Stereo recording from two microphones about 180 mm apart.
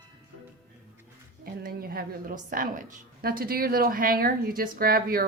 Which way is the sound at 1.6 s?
55° right (ahead or behind).